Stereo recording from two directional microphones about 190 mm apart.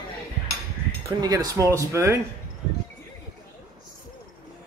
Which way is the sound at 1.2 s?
20° right (ahead or behind).